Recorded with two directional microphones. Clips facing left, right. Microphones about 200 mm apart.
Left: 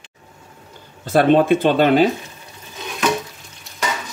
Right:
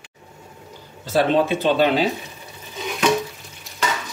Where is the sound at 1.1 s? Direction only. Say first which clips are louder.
Left 5 dB; 55° left (ahead or behind).